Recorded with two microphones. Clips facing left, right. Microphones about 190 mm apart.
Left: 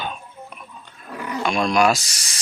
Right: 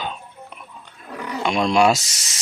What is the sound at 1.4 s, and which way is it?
Speech, 20° right (ahead or behind).